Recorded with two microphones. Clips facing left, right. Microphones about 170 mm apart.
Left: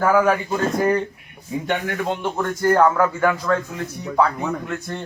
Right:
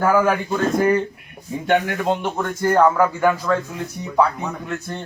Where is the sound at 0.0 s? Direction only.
Centre (ahead or behind).